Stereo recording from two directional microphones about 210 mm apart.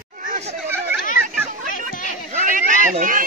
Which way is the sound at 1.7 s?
40° left (ahead or behind).